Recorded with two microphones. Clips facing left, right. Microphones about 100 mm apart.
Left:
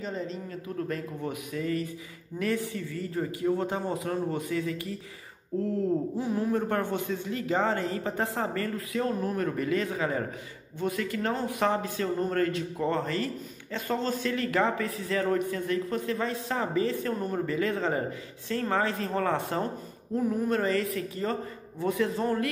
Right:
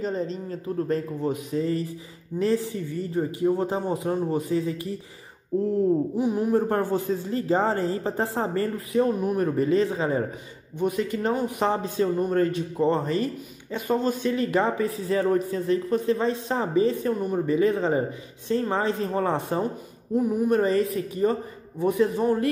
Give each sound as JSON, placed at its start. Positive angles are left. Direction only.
{"t": 0.0, "sound": "a man's voice", "side_deg": -35}
{"t": 6.1, "sound": "a man's voice", "side_deg": -20}
{"t": 6.5, "sound": "a man's voice", "side_deg": -35}